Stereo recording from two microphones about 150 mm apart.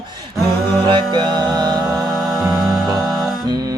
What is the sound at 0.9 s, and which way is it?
Music, 30° right (ahead or behind).